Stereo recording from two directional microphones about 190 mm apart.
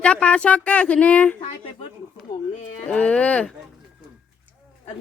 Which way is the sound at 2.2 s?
35° left (ahead or behind).